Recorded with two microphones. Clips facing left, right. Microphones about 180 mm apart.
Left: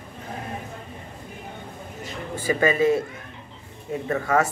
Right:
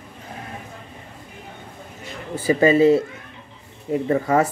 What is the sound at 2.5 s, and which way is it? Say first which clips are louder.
Speech: right 5 dB; 30° right (ahead or behind).